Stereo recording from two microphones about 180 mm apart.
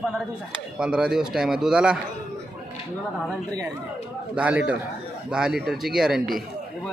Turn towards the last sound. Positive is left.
turn(degrees=0)  # may be behind; listen again after turning